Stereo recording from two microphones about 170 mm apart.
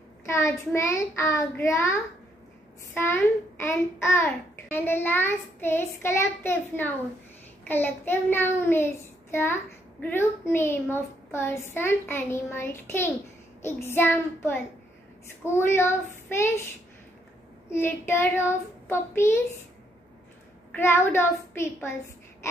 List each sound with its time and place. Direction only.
0.7 s a child's voice: 15° left (ahead or behind)
3.6 s a child's voice: 15° left (ahead or behind)
17.6 s a child's voice: 15° left (ahead or behind)
20.7 s a child's voice: 15° left (ahead or behind)